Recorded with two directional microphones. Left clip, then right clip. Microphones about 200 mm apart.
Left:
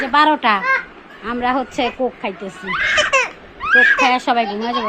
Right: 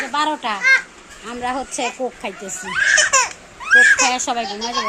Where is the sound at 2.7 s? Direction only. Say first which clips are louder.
Even; 45° left (ahead or behind).